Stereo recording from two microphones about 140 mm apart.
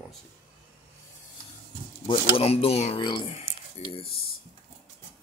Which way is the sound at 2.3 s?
45° left (ahead or behind).